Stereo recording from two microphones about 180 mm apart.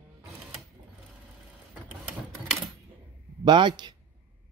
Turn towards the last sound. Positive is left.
turn(degrees=-25)  # may be behind; listen again after turning